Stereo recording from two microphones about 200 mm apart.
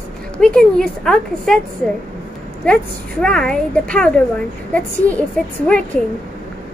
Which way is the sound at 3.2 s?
5° left (ahead or behind).